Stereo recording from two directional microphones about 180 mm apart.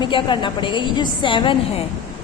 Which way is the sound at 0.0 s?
25° left (ahead or behind).